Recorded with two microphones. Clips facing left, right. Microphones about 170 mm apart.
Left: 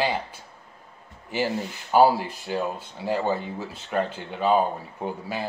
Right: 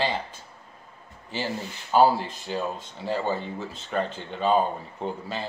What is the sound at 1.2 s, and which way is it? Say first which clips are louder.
Speech: left 4 dB; 15° left (ahead or behind).